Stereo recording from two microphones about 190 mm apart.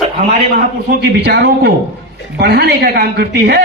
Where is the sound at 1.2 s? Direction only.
60° right (ahead or behind).